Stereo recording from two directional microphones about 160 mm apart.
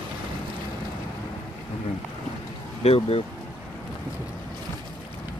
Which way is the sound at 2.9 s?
40° left (ahead or behind).